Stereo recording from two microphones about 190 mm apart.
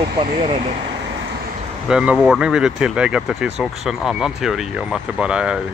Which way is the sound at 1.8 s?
5° right (ahead or behind).